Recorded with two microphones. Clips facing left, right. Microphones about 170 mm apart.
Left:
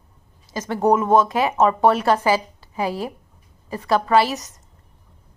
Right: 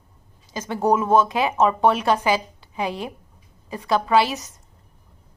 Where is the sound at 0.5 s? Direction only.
Centre (ahead or behind).